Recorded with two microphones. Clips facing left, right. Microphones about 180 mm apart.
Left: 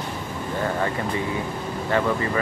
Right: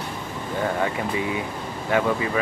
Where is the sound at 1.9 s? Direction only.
10° right (ahead or behind).